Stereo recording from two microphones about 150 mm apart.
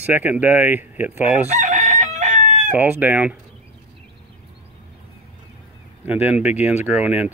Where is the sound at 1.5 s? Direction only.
55° right (ahead or behind).